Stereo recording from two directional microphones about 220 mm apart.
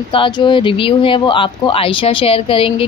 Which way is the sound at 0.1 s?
25° left (ahead or behind).